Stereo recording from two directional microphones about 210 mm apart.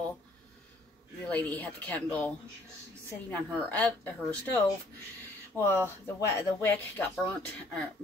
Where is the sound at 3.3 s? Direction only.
10° left (ahead or behind).